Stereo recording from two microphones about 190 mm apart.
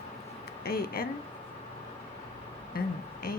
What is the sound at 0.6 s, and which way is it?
Speech, 55° left (ahead or behind).